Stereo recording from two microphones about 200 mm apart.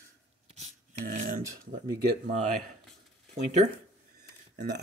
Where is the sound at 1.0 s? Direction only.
45° right (ahead or behind).